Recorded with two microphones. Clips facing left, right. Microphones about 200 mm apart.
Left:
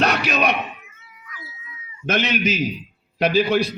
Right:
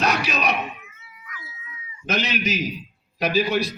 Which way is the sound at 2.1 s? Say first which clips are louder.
Left 3 dB; 60° left (ahead or behind).